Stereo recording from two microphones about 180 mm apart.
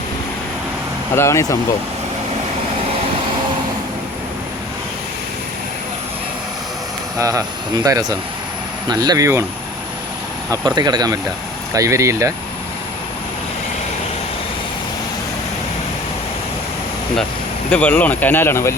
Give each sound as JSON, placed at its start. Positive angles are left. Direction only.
{"t": 1.1, "sound": "speech", "side_deg": 15}
{"t": 7.2, "sound": "speech", "side_deg": -20}
{"t": 8.9, "sound": "speech", "side_deg": -20}
{"t": 10.8, "sound": "speech", "side_deg": -25}
{"t": 17.7, "sound": "speech", "side_deg": 5}